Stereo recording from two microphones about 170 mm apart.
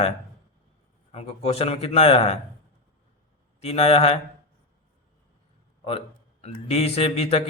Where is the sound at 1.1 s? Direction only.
35° left (ahead or behind).